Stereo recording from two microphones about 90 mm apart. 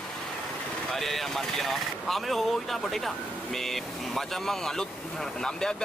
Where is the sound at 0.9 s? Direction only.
5° left (ahead or behind).